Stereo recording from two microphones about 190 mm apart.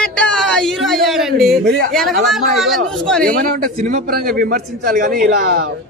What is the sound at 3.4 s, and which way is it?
A man's voice, 50° right (ahead or behind).